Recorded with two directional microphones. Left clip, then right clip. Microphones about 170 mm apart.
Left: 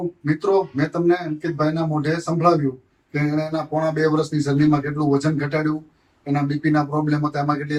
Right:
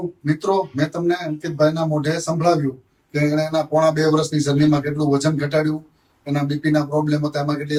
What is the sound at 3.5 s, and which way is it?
Speech, 20° right (ahead or behind).